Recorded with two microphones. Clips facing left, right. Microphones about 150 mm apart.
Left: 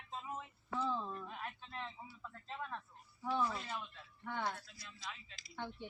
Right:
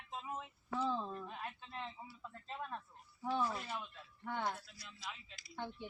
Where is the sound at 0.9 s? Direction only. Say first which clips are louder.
Right 1 dB; 25° right (ahead or behind).